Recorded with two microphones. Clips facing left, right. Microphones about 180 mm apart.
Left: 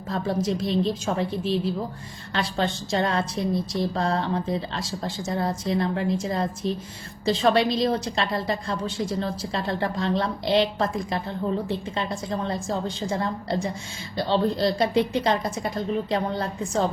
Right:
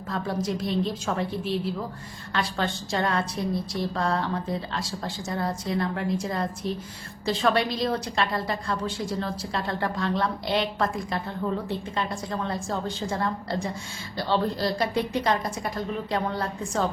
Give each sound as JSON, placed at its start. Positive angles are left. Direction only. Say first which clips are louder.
{"t": 0.1, "sound": "a woman's voice", "louder": "left 3 dB", "side_deg": 25}